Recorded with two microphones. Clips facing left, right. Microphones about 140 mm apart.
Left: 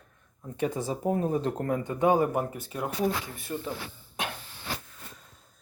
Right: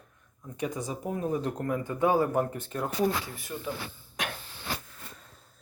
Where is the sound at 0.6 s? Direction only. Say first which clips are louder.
Left 4 dB; 30° left (ahead or behind); by 2.9 s 10° left (ahead or behind).